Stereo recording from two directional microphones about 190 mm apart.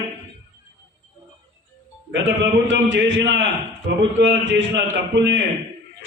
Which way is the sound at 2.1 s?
75° right (ahead or behind).